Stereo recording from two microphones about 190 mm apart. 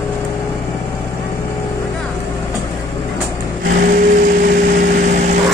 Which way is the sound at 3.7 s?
45° right (ahead or behind).